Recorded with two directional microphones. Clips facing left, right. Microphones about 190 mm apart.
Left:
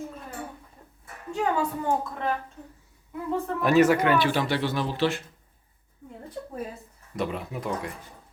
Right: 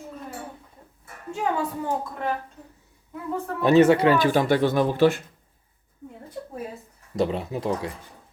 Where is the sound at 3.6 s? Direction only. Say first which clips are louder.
Right 4 dB; 25° right (ahead or behind); by 5.0 s 50° right (ahead or behind).